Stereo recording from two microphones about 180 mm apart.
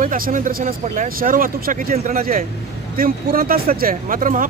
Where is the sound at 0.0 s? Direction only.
50° right (ahead or behind).